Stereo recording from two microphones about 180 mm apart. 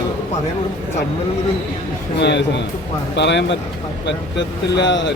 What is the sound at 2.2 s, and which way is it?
Speech, 75° left (ahead or behind).